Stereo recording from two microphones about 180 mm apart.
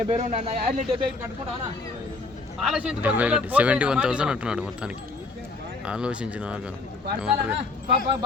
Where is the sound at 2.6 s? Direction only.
5° right (ahead or behind).